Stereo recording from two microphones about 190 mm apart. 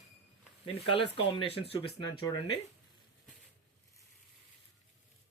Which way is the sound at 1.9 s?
60° left (ahead or behind).